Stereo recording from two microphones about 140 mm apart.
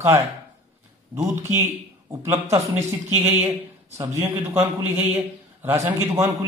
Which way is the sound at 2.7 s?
20° right (ahead or behind).